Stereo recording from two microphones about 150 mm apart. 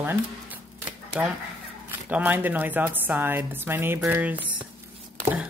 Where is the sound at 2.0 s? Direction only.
10° right (ahead or behind).